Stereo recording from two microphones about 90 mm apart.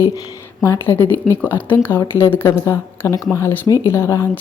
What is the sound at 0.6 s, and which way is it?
Speech, 30° left (ahead or behind).